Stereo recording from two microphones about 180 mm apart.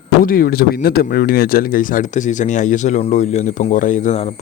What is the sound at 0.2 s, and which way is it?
Speech, 50° left (ahead or behind).